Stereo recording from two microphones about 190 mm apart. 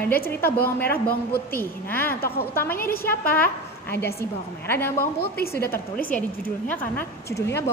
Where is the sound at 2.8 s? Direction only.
50° left (ahead or behind).